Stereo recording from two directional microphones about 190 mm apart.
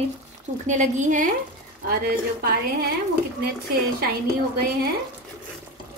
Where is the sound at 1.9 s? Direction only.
55° right (ahead or behind).